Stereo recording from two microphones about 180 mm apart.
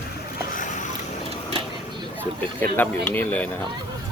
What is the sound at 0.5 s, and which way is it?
Vehicle, 45° left (ahead or behind).